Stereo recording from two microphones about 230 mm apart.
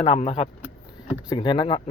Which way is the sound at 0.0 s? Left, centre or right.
Left.